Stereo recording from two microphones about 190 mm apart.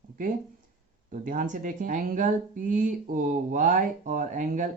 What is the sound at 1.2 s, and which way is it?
Speech, 45° right (ahead or behind).